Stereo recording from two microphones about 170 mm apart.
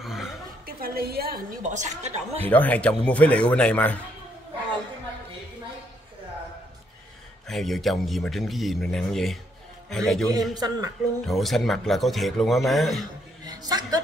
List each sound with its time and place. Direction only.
0.0 s chuckle: centre (ahead or behind)
0.7 s a woman's voice: 60° right (ahead or behind); by 2.4 s 40° right (ahead or behind)
2.4 s speech: 10° left (ahead or behind)
7.4 s a man's voice: centre (ahead or behind)
10.5 s speech: 20° right (ahead or behind)
11.2 s a man's voice: centre (ahead or behind)
13.5 s speech: 20° right (ahead or behind)